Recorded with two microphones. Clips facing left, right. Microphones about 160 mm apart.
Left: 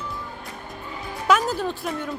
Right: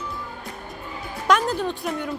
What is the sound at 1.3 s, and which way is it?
Speech, 5° left (ahead or behind).